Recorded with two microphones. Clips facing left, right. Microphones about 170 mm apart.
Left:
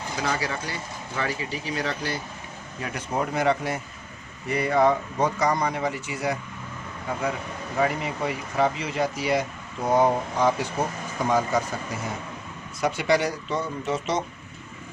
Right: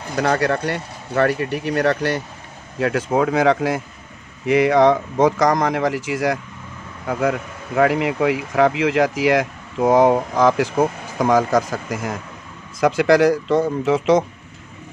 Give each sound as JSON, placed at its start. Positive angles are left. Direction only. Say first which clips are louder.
{"t": 0.2, "sound": "speech", "louder": "right 10 dB", "side_deg": -65}
{"t": 2.7, "sound": "speech", "louder": "right 10 dB", "side_deg": -90}
{"t": 7.1, "sound": "speech", "louder": "right 8 dB", "side_deg": -70}